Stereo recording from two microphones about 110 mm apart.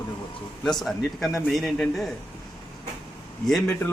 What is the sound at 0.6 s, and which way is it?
Speech, 5° left (ahead or behind).